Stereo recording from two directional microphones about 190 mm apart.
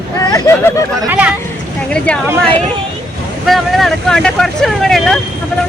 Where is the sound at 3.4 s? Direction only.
Centre (ahead or behind).